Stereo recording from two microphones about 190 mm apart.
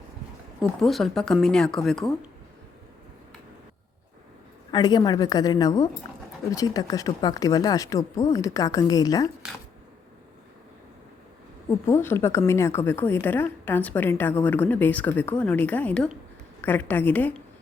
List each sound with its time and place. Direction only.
0.6 s speech: centre (ahead or behind)
4.7 s speech: 20° left (ahead or behind)
11.9 s a woman's voice: 10° left (ahead or behind)